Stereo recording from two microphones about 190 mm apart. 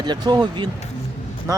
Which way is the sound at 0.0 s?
25° right (ahead or behind).